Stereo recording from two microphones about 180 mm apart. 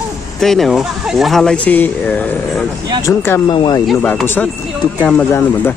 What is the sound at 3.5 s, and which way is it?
Speech, 25° left (ahead or behind).